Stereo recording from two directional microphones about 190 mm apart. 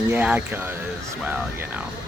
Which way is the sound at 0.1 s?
10° right (ahead or behind).